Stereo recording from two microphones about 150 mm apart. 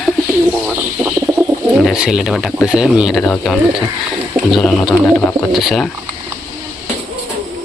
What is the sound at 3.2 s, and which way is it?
Speech, 5° left (ahead or behind).